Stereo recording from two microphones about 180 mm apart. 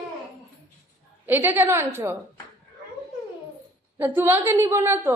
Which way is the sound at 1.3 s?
10° right (ahead or behind).